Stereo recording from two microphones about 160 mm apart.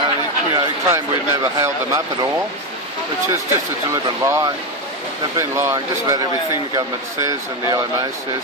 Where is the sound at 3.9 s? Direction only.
20° right (ahead or behind).